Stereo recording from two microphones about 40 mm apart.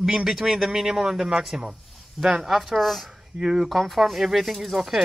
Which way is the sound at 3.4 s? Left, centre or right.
Centre.